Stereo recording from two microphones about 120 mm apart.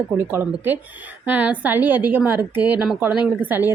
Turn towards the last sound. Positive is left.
turn(degrees=-15)  # may be behind; listen again after turning